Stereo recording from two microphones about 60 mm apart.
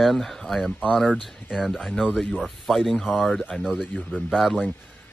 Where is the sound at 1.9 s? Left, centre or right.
Left.